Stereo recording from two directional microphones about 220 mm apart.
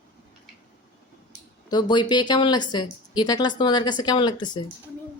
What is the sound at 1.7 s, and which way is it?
Speech, 20° left (ahead or behind).